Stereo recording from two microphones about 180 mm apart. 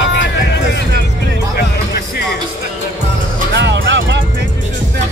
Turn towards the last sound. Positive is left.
turn(degrees=-80)